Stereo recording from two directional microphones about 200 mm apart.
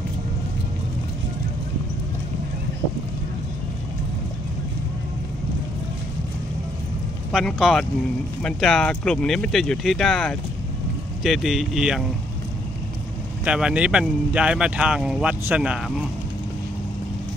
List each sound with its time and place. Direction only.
7.3 s speech: centre (ahead or behind)
13.4 s speech: 5° right (ahead or behind)